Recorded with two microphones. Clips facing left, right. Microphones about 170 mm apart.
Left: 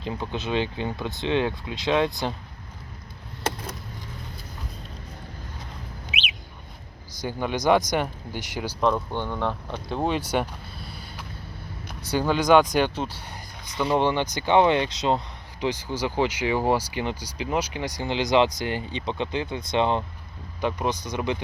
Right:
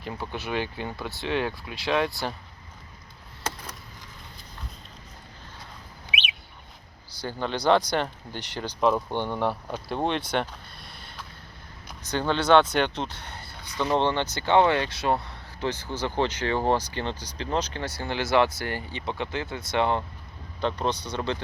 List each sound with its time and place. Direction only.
0.0 s speech: 20° left (ahead or behind)
7.2 s speech: 10° left (ahead or behind)
8.8 s speech: 5° right (ahead or behind)
9.1 s speech: 15° right (ahead or behind)
10.0 s a sound: 5° left (ahead or behind)
12.0 s speech: 10° left (ahead or behind)